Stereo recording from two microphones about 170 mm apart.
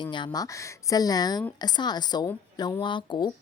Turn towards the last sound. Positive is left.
turn(degrees=25)  # may be behind; listen again after turning